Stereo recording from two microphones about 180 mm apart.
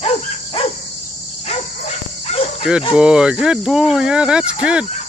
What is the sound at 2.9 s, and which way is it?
Speech, 5° right (ahead or behind).